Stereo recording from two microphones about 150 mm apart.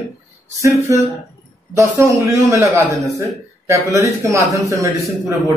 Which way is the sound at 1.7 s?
20° right (ahead or behind).